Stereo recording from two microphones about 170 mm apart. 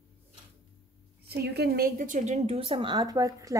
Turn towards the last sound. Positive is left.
turn(degrees=-20)  # may be behind; listen again after turning